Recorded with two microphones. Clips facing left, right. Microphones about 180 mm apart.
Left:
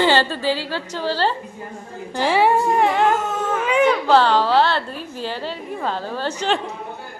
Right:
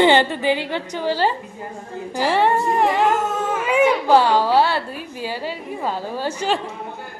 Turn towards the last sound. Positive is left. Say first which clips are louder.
# even
turn(degrees=-10)  # may be behind; listen again after turning